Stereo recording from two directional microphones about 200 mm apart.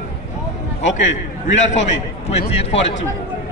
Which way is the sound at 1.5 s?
35° left (ahead or behind).